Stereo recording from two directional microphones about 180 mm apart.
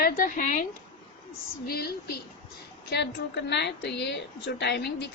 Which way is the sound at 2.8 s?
70° left (ahead or behind).